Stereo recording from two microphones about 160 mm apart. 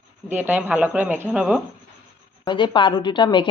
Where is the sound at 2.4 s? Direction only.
30° left (ahead or behind).